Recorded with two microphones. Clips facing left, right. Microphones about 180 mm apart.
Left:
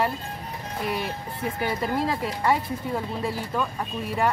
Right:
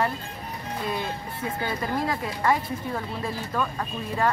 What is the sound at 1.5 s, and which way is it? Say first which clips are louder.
Speech: left 2 dB; 15° left (ahead or behind).